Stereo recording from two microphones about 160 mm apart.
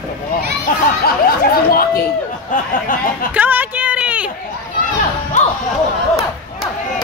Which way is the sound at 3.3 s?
10° right (ahead or behind).